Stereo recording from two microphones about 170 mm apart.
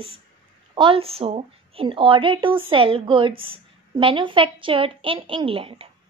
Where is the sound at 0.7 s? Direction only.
30° right (ahead or behind).